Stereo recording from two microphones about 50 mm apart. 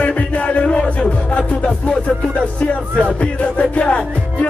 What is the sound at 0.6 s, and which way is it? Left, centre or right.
Music, left.